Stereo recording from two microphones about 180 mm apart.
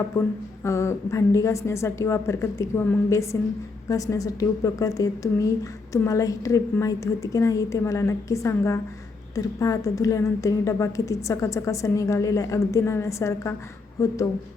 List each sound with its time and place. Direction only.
0.1 s a woman's voice: 15° left (ahead or behind)